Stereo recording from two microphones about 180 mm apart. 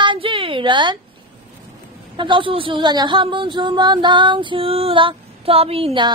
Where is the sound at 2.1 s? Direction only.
25° right (ahead or behind).